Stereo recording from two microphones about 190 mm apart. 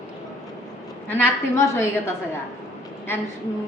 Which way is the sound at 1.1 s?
10° left (ahead or behind).